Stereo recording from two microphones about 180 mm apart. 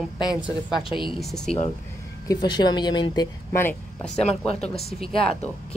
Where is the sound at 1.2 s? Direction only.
Centre (ahead or behind).